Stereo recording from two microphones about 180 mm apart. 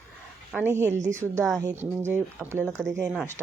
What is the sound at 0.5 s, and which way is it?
Speech, 10° right (ahead or behind).